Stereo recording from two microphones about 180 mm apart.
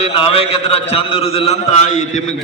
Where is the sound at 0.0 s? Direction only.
30° left (ahead or behind).